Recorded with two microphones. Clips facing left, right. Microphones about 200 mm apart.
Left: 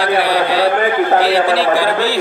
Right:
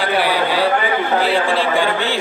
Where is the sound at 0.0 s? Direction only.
65° left (ahead or behind).